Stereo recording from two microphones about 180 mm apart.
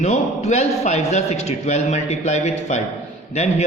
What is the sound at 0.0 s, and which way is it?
A man's voice, 40° left (ahead or behind).